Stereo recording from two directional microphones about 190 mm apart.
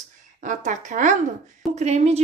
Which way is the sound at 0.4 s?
40° right (ahead or behind).